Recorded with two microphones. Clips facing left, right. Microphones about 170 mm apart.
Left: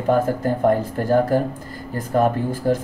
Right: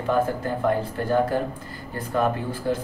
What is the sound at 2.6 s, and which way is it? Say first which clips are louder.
Speech: left 5 dB; 40° left (ahead or behind).